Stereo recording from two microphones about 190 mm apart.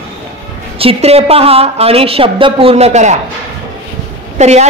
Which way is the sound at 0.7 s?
30° right (ahead or behind).